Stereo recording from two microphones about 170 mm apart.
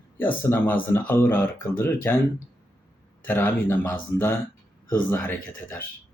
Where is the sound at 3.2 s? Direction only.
10° left (ahead or behind).